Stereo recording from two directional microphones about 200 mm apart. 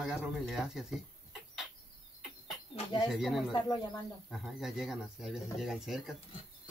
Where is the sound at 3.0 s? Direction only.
Centre (ahead or behind).